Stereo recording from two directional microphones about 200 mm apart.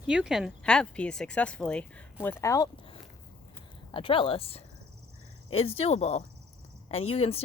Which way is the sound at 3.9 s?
25° left (ahead or behind).